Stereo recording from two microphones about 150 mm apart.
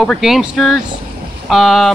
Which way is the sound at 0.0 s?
Centre (ahead or behind).